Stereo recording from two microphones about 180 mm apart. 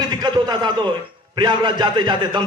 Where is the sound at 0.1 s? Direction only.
25° right (ahead or behind).